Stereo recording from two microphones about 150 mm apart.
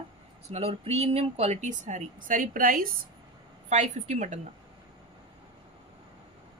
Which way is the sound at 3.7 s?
50° right (ahead or behind).